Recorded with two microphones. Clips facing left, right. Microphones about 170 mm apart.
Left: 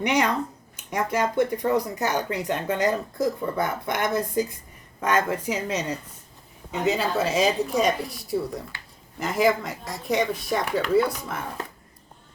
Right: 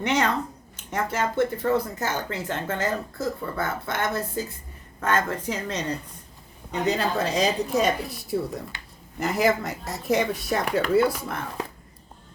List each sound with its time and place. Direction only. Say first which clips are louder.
0.0 s speech: left 1 dB; 10° left (ahead or behind)